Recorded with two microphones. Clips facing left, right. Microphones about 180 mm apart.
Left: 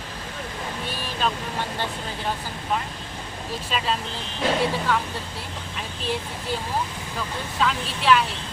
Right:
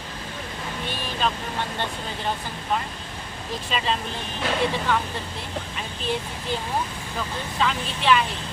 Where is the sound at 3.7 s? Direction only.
Centre (ahead or behind).